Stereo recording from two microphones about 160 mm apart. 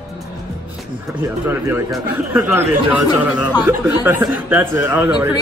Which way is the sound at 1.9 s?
10° right (ahead or behind).